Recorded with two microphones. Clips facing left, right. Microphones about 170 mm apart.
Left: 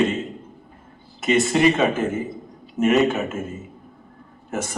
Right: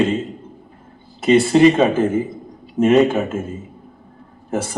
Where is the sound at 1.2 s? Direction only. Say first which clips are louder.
Right 6 dB; 30° right (ahead or behind).